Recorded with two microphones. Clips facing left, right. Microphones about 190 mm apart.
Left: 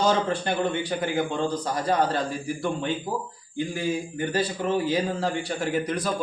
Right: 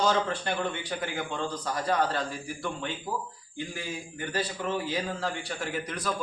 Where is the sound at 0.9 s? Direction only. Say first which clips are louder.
Left 7 dB; 35° left (ahead or behind).